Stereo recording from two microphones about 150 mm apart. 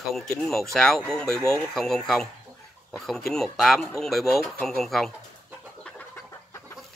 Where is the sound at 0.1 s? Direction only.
Centre (ahead or behind).